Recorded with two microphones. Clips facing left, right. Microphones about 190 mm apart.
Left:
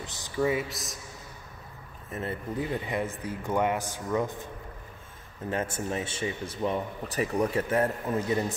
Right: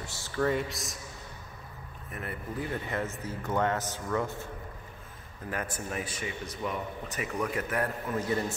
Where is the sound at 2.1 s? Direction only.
25° left (ahead or behind).